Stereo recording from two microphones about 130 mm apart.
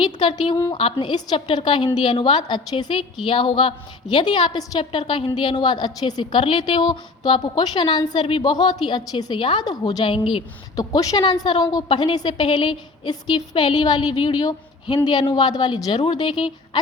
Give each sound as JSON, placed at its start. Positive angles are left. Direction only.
{"t": 0.0, "sound": "a woman's voice", "side_deg": 40}
{"t": 10.8, "sound": "a woman's voice", "side_deg": 30}